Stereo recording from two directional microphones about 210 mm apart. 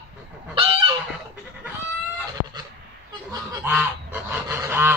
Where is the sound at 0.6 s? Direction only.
25° right (ahead or behind).